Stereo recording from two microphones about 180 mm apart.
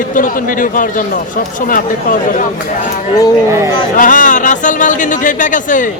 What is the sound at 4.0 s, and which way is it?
Speech, 45° left (ahead or behind).